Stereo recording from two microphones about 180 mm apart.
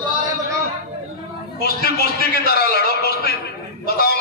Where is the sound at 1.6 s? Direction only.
60° left (ahead or behind).